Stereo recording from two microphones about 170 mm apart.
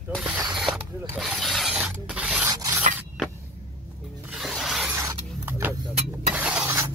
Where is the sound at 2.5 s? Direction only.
20° right (ahead or behind).